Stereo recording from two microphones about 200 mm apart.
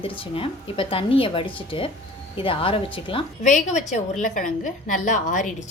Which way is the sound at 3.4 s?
35° left (ahead or behind).